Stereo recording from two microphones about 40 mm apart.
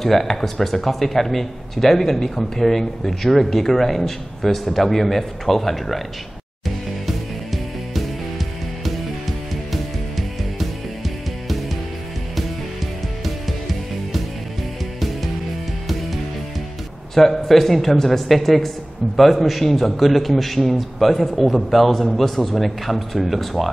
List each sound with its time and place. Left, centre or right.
0.0 s speech: centre
7.1 s music: centre
9.7 s music: centre
17.1 s speech: centre